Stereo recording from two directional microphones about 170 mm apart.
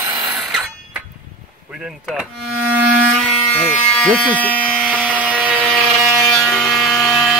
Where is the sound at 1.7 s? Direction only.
5° right (ahead or behind).